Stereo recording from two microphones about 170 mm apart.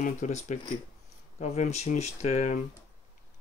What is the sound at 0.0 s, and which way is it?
Speech, 45° left (ahead or behind).